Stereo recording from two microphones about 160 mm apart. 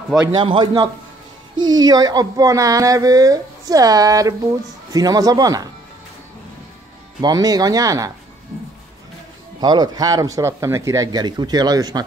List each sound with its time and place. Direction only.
0.4 s a man's voice: 30° right (ahead or behind)
7.2 s speech: 25° right (ahead or behind)
9.6 s speech: 25° right (ahead or behind)